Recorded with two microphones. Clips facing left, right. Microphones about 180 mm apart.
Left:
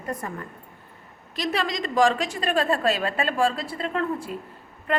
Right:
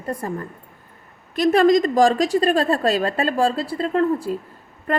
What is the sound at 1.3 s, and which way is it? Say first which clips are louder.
A woman's voice: right 12 dB; 50° right (ahead or behind).